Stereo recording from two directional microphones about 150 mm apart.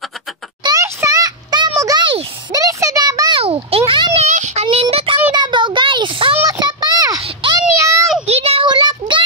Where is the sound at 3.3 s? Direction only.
40° right (ahead or behind).